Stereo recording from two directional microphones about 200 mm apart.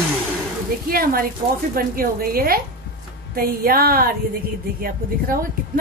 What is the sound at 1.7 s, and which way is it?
A woman's voice, 45° right (ahead or behind).